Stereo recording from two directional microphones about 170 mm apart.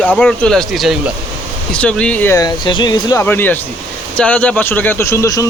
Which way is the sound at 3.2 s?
10° left (ahead or behind).